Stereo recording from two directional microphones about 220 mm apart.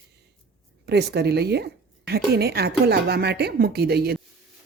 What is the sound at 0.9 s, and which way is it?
A woman's voice, 50° right (ahead or behind).